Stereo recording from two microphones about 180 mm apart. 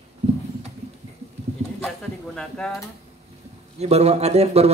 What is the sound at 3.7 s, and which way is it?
Speech, 35° right (ahead or behind).